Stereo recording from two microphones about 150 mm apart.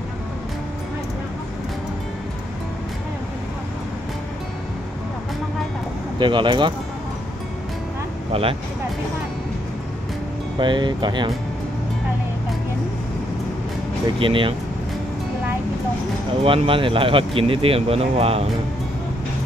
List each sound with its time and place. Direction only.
6.1 s speech: 30° right (ahead or behind)
8.3 s speech: 40° right (ahead or behind)
10.6 s speech: 30° right (ahead or behind)
14.1 s speech: 35° right (ahead or behind)
16.4 s speech: 35° right (ahead or behind)